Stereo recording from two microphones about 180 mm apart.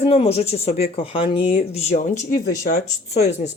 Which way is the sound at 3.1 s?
40° left (ahead or behind).